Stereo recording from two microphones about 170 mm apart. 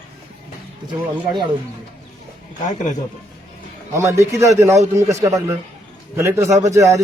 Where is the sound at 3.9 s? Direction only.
15° right (ahead or behind).